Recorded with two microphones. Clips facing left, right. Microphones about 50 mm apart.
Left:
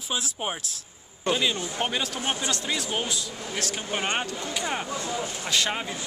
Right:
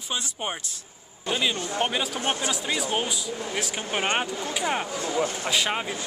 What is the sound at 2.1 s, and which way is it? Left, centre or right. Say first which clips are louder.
Speech: right 2 dB; centre.